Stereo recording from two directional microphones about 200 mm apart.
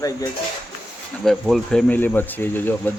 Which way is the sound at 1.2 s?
Centre (ahead or behind).